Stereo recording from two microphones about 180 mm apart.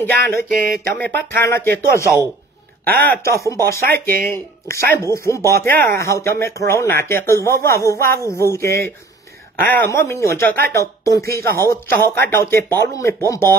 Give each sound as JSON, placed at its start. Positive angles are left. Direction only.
{"t": 0.0, "sound": "speech", "side_deg": 15}
{"t": 0.5, "sound": "a sound", "side_deg": 0}
{"t": 1.0, "sound": "speech", "side_deg": 10}
{"t": 3.2, "sound": "speech", "side_deg": 15}